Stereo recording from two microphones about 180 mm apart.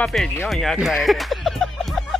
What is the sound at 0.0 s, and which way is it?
Music, 5° left (ahead or behind).